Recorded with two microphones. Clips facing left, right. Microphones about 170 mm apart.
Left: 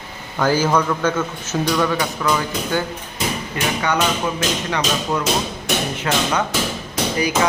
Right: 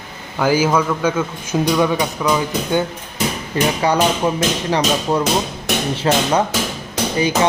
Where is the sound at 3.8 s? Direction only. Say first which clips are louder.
Right 3 dB; 30° right (ahead or behind).